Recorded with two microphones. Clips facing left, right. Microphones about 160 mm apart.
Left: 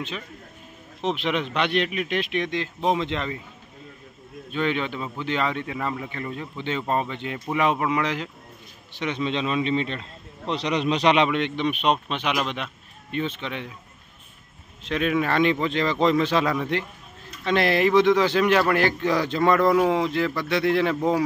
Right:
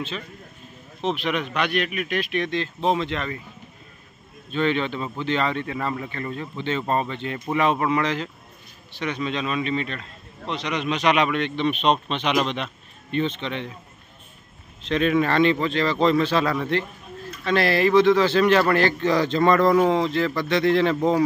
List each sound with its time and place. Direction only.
1.0 s speech: 20° left (ahead or behind)
4.5 s a man's voice: 10° left (ahead or behind)
14.9 s a man's voice: 10° left (ahead or behind)